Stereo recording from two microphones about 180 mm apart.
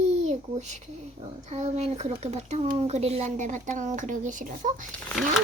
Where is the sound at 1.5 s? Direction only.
35° right (ahead or behind).